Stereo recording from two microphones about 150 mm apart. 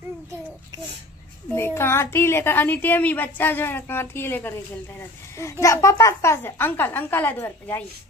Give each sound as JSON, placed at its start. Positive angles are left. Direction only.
{"t": 1.5, "sound": "a woman's voice", "side_deg": 15}